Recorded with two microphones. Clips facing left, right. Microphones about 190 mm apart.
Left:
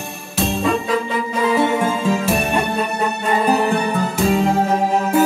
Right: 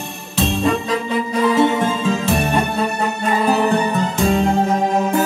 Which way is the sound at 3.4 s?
10° left (ahead or behind).